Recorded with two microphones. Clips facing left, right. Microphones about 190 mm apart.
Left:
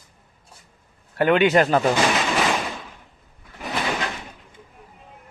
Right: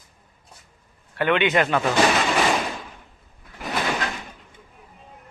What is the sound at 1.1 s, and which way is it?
Speech, 40° left (ahead or behind).